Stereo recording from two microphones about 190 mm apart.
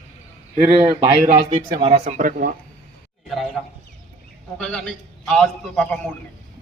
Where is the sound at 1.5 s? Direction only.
25° right (ahead or behind).